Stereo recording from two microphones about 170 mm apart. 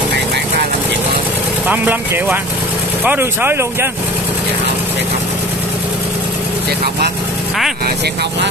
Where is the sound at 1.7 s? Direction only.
10° right (ahead or behind).